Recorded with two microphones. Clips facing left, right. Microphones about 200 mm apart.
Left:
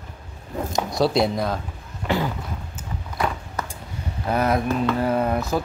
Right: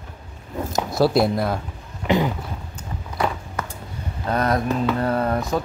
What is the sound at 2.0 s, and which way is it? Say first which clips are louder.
Speech: right 4 dB; 20° right (ahead or behind).